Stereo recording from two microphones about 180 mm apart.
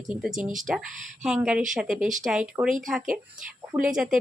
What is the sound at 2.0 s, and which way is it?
Speech, 45° right (ahead or behind).